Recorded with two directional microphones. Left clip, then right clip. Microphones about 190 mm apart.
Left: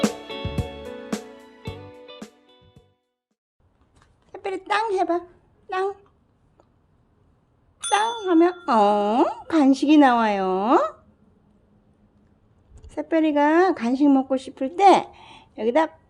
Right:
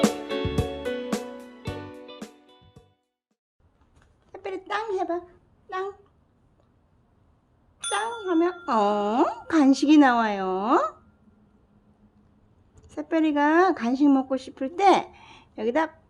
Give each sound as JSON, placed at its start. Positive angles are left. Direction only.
{"t": 0.0, "sound": "music", "side_deg": 0}
{"t": 4.3, "sound": "a sound", "side_deg": 20}
{"t": 5.6, "sound": "speech", "side_deg": 25}
{"t": 7.8, "sound": "speech", "side_deg": 20}
{"t": 12.7, "sound": "speech", "side_deg": 10}